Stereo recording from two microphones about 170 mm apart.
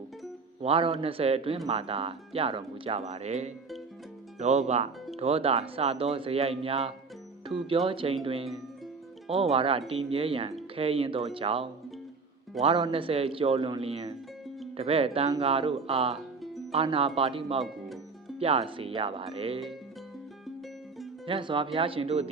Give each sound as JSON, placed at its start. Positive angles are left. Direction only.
{"t": 0.6, "sound": "speech", "side_deg": -35}
{"t": 17.6, "sound": "music", "side_deg": 0}
{"t": 18.3, "sound": "speech", "side_deg": -35}
{"t": 21.2, "sound": "speech", "side_deg": -30}